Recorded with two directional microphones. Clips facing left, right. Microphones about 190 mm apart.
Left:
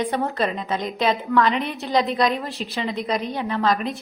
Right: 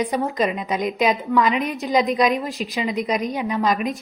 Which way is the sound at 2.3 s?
15° right (ahead or behind).